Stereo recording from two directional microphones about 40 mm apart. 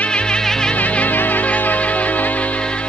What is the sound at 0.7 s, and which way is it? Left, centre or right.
Music, left.